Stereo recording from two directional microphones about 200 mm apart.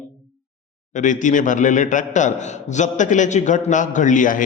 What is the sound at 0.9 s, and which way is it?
A man's voice, 40° left (ahead or behind).